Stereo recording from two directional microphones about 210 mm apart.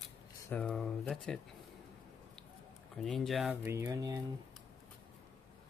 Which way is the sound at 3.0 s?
Centre (ahead or behind).